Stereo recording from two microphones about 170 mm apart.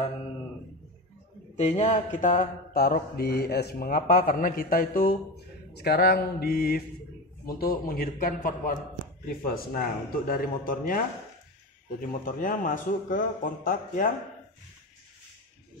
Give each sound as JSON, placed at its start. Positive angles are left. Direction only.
{"t": 1.6, "sound": "mantra", "side_deg": 45}
{"t": 12.0, "sound": "a man's voice", "side_deg": 55}